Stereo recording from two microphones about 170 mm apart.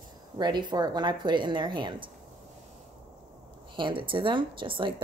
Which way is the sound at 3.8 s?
30° right (ahead or behind).